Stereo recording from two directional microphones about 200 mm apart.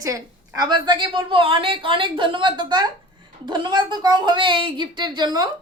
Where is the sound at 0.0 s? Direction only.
15° right (ahead or behind).